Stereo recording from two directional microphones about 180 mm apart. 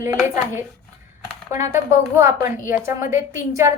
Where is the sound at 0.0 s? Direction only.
15° right (ahead or behind).